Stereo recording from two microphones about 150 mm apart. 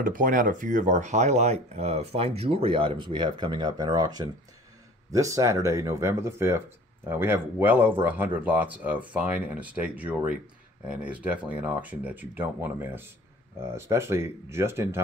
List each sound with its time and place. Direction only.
0.0 s speech: 65° right (ahead or behind); by 15.0 s 15° right (ahead or behind)